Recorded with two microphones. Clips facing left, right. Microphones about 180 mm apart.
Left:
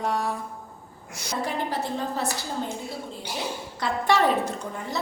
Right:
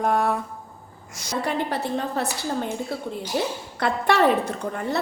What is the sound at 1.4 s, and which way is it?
Speech, 60° right (ahead or behind).